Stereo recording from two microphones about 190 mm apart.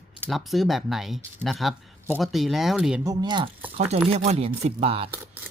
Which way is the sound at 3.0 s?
20° right (ahead or behind).